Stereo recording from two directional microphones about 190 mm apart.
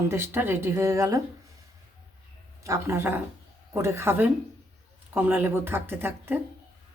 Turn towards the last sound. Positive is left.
turn(degrees=-10)  # may be behind; listen again after turning